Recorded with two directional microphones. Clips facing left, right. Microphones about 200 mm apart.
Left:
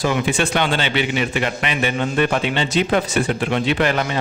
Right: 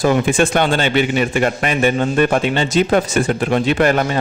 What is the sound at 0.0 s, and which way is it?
A man's voice, 50° right (ahead or behind).